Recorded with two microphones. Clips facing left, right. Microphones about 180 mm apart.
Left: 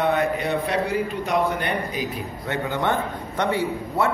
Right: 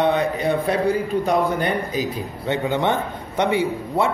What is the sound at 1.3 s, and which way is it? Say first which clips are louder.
Speech: right 2 dB; 35° right (ahead or behind).